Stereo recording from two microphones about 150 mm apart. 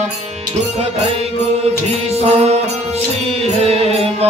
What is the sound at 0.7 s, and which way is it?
Music, 45° right (ahead or behind).